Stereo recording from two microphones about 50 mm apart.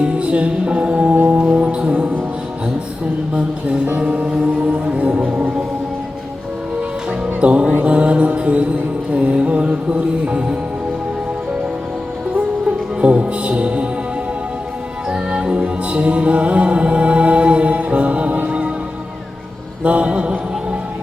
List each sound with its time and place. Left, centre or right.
0.0 s music: right
3.9 s music: right
7.4 s music: right
12.6 s music: right
15.1 s music: centre
19.8 s mantra: right